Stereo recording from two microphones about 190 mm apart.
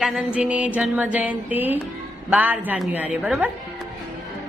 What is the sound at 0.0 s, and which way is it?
A woman's voice, 5° right (ahead or behind).